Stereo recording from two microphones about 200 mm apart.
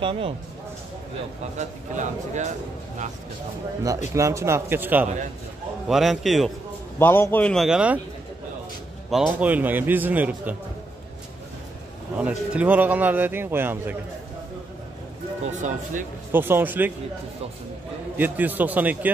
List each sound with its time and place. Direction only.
0.0 s speech: 25° right (ahead or behind)
2.0 s speech: 35° right (ahead or behind)
3.8 s a man's voice: 15° right (ahead or behind); by 6.5 s centre (ahead or behind)
7.0 s a man's voice: 10° left (ahead or behind); by 8.0 s 5° right (ahead or behind)
9.1 s a man's voice: 5° right (ahead or behind)
12.2 s a man's voice: 5° right (ahead or behind)
16.3 s a man's voice: 10° right (ahead or behind)
18.1 s a man's voice: 10° right (ahead or behind)